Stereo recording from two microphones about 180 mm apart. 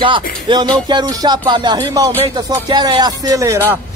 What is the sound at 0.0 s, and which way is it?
Music, 25° right (ahead or behind).